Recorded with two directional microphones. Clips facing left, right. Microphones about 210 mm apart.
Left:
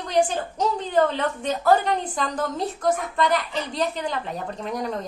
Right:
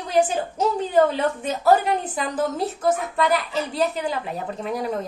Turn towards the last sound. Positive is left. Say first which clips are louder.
# right 2 dB
turn(degrees=-5)  # may be behind; listen again after turning